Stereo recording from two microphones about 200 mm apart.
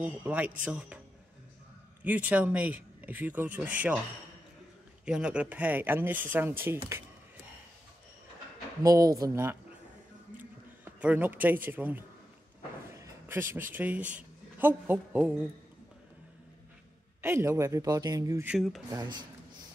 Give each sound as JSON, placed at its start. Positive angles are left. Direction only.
{"t": 0.0, "sound": "a man's voice", "side_deg": -10}
{"t": 2.0, "sound": "speech", "side_deg": -10}
{"t": 5.0, "sound": "speech", "side_deg": -5}
{"t": 8.8, "sound": "speech", "side_deg": -15}
{"t": 11.0, "sound": "speech", "side_deg": -10}
{"t": 17.2, "sound": "speech", "side_deg": -10}